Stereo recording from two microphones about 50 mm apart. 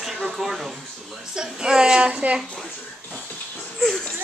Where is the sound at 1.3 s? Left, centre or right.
Centre.